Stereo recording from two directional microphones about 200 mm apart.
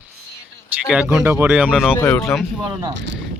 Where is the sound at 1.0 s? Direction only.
10° right (ahead or behind).